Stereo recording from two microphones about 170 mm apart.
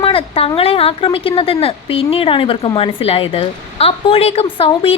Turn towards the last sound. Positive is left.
turn(degrees=30)  # may be behind; listen again after turning